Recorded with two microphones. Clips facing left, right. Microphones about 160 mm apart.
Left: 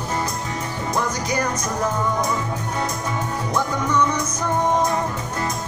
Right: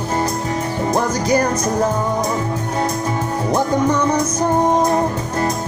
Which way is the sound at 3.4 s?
35° right (ahead or behind).